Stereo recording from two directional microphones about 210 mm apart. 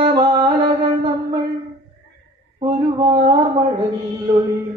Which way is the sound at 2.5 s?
20° right (ahead or behind).